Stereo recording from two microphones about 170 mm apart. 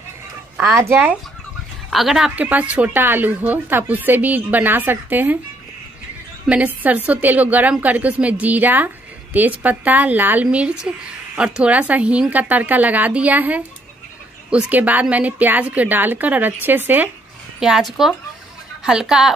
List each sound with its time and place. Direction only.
0.6 s speech: 15° right (ahead or behind)
1.9 s a woman's voice: centre (ahead or behind)
6.4 s a woman's voice: 10° right (ahead or behind)